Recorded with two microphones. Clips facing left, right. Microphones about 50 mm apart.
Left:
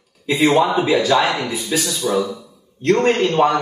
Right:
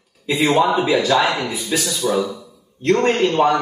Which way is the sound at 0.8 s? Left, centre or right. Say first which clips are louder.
Left 1 dB; centre.